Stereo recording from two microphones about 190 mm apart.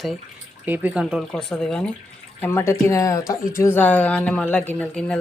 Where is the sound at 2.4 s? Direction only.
15° left (ahead or behind).